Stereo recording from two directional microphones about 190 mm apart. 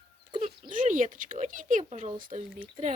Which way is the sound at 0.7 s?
45° right (ahead or behind).